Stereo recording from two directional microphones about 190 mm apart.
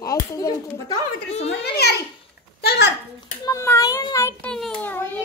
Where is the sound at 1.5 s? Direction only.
60° left (ahead or behind).